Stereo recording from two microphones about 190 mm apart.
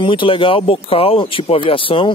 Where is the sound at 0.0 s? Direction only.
25° left (ahead or behind).